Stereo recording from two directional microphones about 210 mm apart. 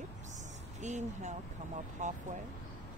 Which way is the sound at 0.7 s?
35° right (ahead or behind).